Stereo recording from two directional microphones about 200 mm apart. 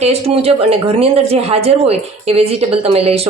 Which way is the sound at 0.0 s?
30° right (ahead or behind).